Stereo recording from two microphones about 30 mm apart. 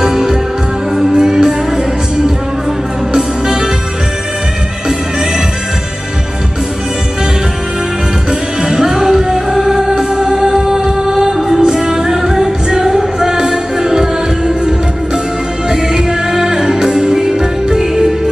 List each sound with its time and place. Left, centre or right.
0.0 s music: centre
3.1 s music: centre
8.3 s music: centre
15.7 s music: centre